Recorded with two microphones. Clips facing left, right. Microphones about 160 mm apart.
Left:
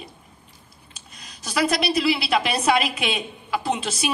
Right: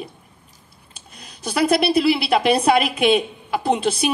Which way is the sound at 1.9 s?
50° right (ahead or behind).